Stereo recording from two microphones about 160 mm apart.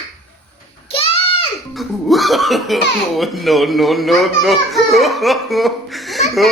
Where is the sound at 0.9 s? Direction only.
35° left (ahead or behind).